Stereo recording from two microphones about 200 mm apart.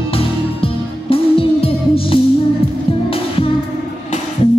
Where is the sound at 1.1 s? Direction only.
25° left (ahead or behind).